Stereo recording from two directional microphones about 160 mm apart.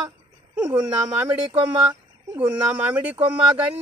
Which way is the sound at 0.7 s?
5° right (ahead or behind).